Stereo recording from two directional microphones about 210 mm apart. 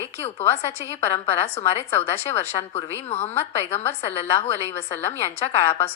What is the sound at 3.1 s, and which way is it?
Speech, 30° left (ahead or behind).